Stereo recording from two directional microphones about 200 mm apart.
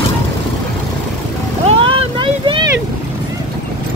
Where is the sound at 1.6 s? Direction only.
25° right (ahead or behind).